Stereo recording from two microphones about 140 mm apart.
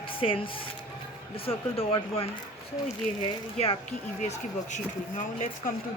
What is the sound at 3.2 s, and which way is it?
Speech, 35° left (ahead or behind).